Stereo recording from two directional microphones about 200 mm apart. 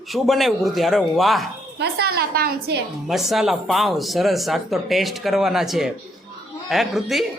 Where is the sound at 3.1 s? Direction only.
Centre (ahead or behind).